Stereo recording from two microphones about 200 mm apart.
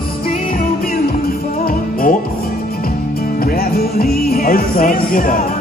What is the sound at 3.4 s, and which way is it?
Music, 50° left (ahead or behind).